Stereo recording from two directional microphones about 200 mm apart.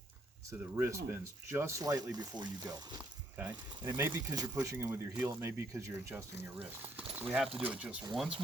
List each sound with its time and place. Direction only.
0.8 s speech: 15° right (ahead or behind)
3.3 s speech: 10° right (ahead or behind)